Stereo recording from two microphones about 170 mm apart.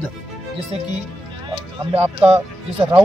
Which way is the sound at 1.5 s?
25° right (ahead or behind).